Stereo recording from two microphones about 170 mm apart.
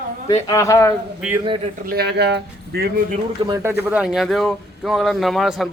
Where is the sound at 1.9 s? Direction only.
70° right (ahead or behind).